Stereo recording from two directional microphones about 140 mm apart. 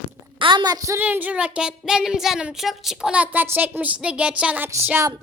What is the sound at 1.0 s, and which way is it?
A woman's voice, 10° right (ahead or behind).